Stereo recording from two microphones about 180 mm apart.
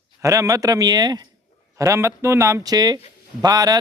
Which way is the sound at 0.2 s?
15° right (ahead or behind).